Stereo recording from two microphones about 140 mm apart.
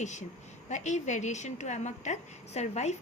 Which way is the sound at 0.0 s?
60° left (ahead or behind).